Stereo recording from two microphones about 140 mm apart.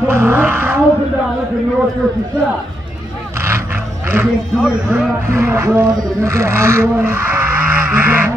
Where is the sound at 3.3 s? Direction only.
20° right (ahead or behind).